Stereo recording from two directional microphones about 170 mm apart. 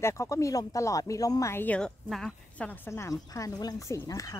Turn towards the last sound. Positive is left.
turn(degrees=20)  # may be behind; listen again after turning